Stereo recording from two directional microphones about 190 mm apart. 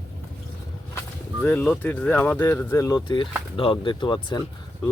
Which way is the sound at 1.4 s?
10° left (ahead or behind).